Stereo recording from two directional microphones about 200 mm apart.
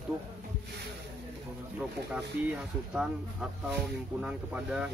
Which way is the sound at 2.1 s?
5° right (ahead or behind).